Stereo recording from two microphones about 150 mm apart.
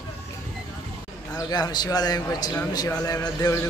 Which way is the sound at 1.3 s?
25° left (ahead or behind).